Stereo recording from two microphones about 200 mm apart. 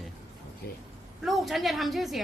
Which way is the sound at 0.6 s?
50° left (ahead or behind).